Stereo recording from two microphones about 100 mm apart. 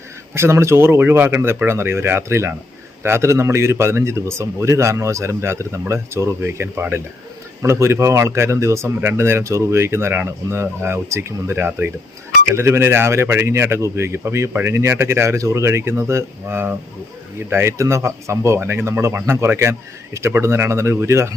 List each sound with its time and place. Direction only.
0.3 s speech: 25° right (ahead or behind)